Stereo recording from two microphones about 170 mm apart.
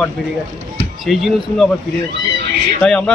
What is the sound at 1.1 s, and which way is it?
Speech, centre (ahead or behind).